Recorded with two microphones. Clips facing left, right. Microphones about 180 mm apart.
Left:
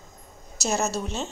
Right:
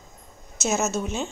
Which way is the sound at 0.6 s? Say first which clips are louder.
Right 2 dB; 35° left (ahead or behind).